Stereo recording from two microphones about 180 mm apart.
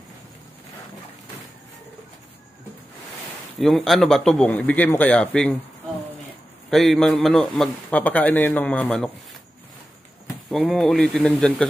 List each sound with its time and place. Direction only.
3.5 s a man's voice: centre (ahead or behind)
6.7 s a man's voice: centre (ahead or behind)
10.5 s a man's voice: centre (ahead or behind)